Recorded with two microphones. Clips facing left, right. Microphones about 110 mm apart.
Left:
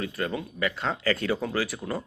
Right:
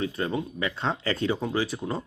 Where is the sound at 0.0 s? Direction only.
25° right (ahead or behind).